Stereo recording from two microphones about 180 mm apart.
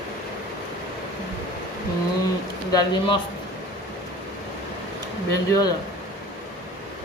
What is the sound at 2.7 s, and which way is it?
Speech, 20° left (ahead or behind).